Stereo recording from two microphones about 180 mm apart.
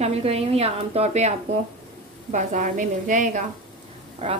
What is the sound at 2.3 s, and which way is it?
A woman's voice, 45° right (ahead or behind).